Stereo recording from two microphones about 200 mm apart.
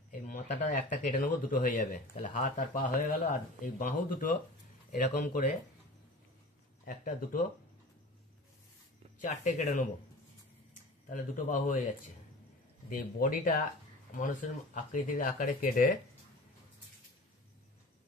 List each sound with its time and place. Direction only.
0.1 s speech: 40° left (ahead or behind)
6.9 s speech: 40° left (ahead or behind)
9.2 s speech: 35° left (ahead or behind)
12.9 s speech: 45° left (ahead or behind)